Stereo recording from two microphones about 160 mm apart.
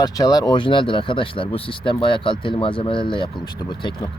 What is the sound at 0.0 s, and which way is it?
Speech, 25° left (ahead or behind).